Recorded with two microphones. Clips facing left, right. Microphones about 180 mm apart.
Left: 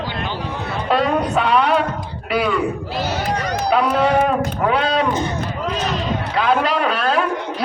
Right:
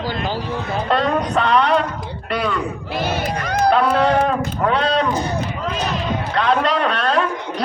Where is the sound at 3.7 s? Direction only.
5° left (ahead or behind).